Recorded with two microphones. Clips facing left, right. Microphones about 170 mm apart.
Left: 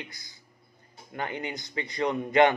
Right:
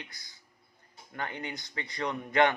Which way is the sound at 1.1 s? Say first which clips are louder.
Left 4 dB; 15° left (ahead or behind).